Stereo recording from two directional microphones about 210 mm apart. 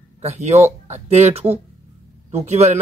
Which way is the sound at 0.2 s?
30° right (ahead or behind).